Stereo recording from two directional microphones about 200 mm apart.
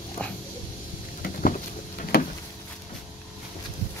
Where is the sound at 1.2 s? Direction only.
40° left (ahead or behind).